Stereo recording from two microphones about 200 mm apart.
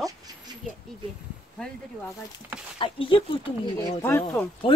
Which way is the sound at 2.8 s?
25° left (ahead or behind).